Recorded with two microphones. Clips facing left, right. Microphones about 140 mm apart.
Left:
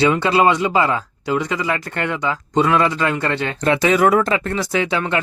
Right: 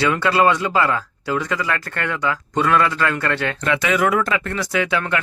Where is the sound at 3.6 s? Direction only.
35° left (ahead or behind).